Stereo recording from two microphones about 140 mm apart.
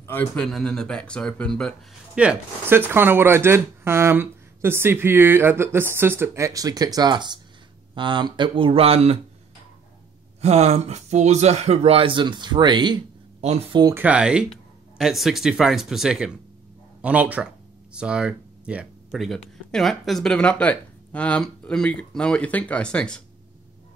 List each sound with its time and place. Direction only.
0.0 s a man's voice: 15° left (ahead or behind)
0.4 s speech: centre (ahead or behind)
2.1 s speech: 10° right (ahead or behind); by 9.2 s 45° right (ahead or behind)
10.4 s speech: 50° right (ahead or behind); by 13.0 s 30° right (ahead or behind)
13.4 s speech: 45° right (ahead or behind)
13.9 s speech: 10° right (ahead or behind); by 23.2 s 5° left (ahead or behind)